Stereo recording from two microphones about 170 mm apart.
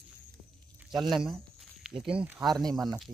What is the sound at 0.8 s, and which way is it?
Speech, centre (ahead or behind).